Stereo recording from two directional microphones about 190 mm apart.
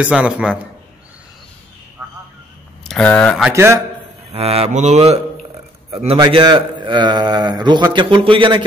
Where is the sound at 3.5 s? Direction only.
15° right (ahead or behind).